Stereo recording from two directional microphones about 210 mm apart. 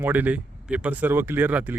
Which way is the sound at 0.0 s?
10° right (ahead or behind).